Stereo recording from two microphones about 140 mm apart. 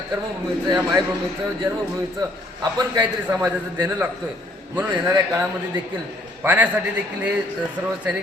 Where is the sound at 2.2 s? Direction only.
25° right (ahead or behind).